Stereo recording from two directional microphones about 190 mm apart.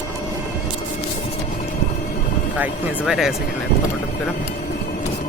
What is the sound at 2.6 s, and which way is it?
Speech, centre (ahead or behind).